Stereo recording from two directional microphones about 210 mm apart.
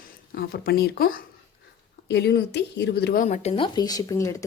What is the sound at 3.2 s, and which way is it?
Speech, 35° left (ahead or behind).